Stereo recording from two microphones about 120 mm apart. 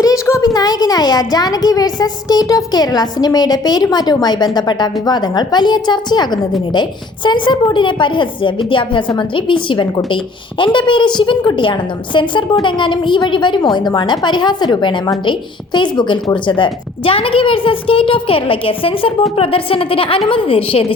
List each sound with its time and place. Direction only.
0.0 s a woman's voice: 25° left (ahead or behind); by 20.8 s 50° left (ahead or behind)